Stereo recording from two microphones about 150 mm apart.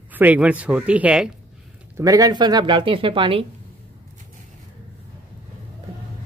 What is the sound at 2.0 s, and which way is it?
Speech, 25° right (ahead or behind).